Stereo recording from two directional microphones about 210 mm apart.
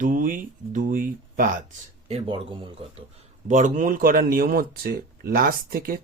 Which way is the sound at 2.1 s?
25° right (ahead or behind).